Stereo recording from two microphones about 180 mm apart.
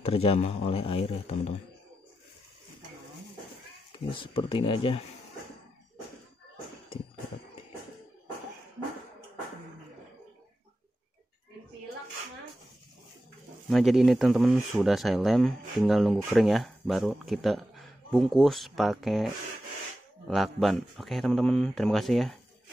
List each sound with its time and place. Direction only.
0.0 s speech: 35° left (ahead or behind)
3.9 s speech: 30° left (ahead or behind)
13.7 s speech: centre (ahead or behind)